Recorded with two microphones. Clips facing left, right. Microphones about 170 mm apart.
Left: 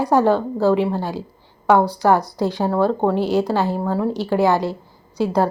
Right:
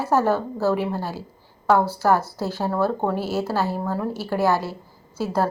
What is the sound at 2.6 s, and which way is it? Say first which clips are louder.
Speech: left 4 dB; 15° left (ahead or behind).